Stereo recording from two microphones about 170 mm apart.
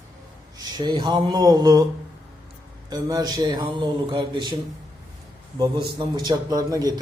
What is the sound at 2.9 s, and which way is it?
A man's voice, 20° right (ahead or behind).